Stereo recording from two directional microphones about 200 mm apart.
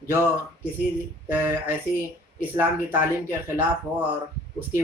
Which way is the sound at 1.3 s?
10° right (ahead or behind).